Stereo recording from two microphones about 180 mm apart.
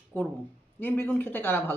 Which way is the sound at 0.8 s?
10° left (ahead or behind).